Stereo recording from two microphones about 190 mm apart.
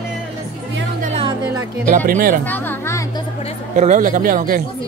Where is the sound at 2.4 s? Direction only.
10° left (ahead or behind).